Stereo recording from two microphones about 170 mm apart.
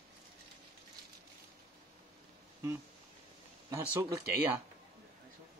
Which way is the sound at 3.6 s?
15° right (ahead or behind).